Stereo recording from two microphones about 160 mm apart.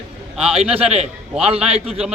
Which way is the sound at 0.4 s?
40° right (ahead or behind).